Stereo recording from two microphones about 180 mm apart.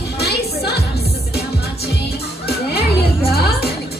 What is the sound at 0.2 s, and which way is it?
Music, 65° left (ahead or behind).